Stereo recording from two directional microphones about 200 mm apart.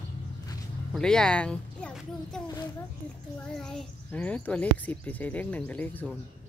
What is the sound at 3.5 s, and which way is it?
Speech, 5° left (ahead or behind).